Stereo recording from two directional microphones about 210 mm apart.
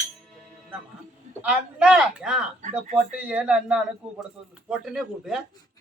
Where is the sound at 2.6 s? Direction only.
35° right (ahead or behind).